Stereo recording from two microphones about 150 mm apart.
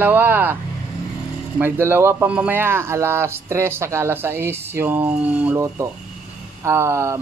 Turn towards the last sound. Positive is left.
turn(degrees=-20)  # may be behind; listen again after turning